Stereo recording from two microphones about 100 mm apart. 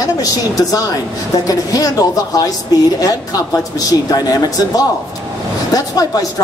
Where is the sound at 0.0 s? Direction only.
40° left (ahead or behind).